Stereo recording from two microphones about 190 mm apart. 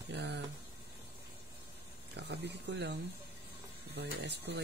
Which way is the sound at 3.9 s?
60° right (ahead or behind).